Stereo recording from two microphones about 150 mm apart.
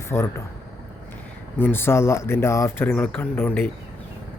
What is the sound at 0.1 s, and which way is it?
Speech, 20° left (ahead or behind).